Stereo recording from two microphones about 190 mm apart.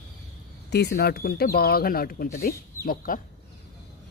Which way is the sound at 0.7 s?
60° left (ahead or behind).